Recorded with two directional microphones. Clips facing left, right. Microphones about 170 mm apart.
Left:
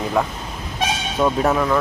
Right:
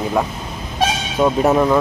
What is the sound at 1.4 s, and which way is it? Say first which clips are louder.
Speech: right 4 dB; 20° right (ahead or behind).